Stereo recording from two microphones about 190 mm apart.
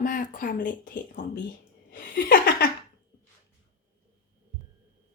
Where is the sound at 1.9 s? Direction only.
50° left (ahead or behind).